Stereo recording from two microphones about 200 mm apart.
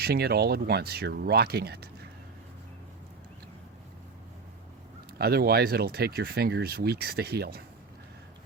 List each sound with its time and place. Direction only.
0.0 s speech: 55° right (ahead or behind)
5.1 s speech: 50° right (ahead or behind)